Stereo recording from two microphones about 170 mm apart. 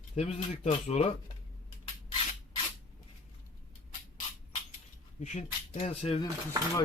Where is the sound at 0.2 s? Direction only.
40° left (ahead or behind).